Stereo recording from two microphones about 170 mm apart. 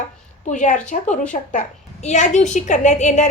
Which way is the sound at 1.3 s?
35° left (ahead or behind).